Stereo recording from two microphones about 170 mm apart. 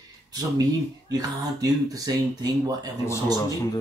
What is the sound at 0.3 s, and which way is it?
Speech, 20° right (ahead or behind).